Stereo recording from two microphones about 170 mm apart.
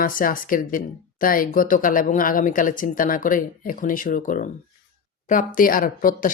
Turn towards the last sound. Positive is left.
turn(degrees=55)  # may be behind; listen again after turning